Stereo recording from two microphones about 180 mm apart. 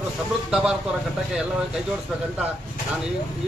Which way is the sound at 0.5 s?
5° right (ahead or behind).